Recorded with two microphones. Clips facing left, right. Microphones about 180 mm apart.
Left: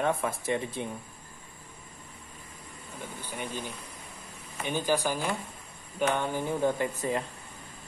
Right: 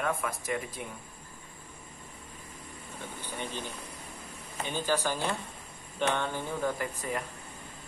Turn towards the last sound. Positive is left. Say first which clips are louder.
# left 4 dB
turn(degrees=25)  # may be behind; listen again after turning